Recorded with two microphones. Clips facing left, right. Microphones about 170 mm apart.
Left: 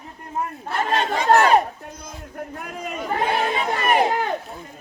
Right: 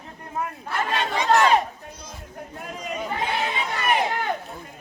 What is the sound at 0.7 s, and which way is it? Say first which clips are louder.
Chatter: left 3 dB; 40° left (ahead or behind).